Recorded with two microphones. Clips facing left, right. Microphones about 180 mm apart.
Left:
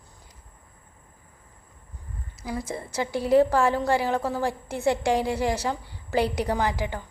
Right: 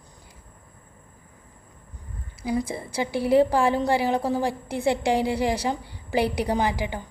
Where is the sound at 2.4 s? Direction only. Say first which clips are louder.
Right 5 dB; 10° right (ahead or behind).